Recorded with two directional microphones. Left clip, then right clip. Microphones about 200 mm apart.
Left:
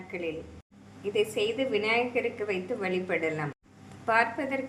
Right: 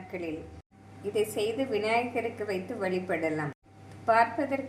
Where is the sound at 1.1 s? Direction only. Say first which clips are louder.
Left 1 dB; 10° right (ahead or behind).